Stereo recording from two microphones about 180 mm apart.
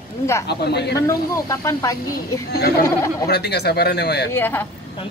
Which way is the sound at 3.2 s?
65° left (ahead or behind).